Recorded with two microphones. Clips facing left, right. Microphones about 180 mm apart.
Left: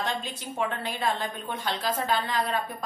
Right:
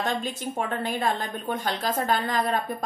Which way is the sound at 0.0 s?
45° right (ahead or behind).